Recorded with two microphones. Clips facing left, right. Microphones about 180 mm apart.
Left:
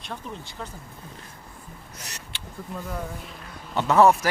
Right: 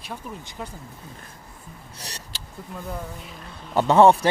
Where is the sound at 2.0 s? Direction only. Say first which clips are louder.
Right 4 dB; 35° right (ahead or behind).